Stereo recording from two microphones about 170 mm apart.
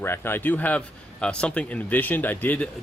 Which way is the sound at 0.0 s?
15° left (ahead or behind).